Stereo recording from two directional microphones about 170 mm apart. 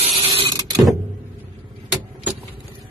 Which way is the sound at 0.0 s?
35° right (ahead or behind).